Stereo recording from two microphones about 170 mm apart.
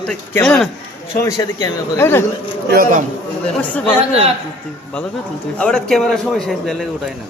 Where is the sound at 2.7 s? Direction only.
55° right (ahead or behind).